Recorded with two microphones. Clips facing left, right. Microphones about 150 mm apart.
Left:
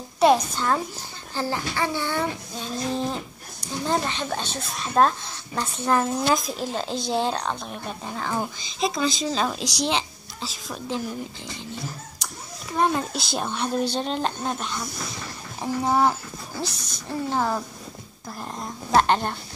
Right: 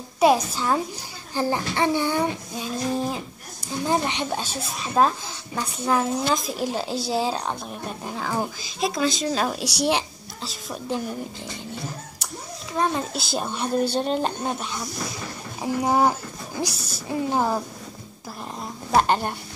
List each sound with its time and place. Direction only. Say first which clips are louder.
0.2 s speech: even; 5° right (ahead or behind)
1.3 s a woman's voice: right 3 dB; 15° right (ahead or behind)
12.7 s a woman's voice: left 1 dB; centre (ahead or behind); by 17.6 s 15° right (ahead or behind)
18.9 s speech: even; 5° right (ahead or behind)